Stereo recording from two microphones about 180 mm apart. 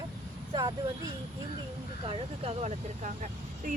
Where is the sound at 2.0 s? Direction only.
35° right (ahead or behind).